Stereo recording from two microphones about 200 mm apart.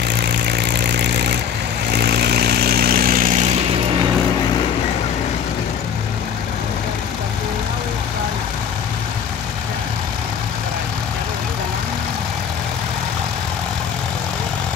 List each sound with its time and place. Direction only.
0.1 s vehicle: 55° right (ahead or behind)